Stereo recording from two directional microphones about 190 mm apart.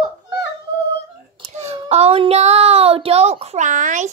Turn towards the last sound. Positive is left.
turn(degrees=-40)  # may be behind; listen again after turning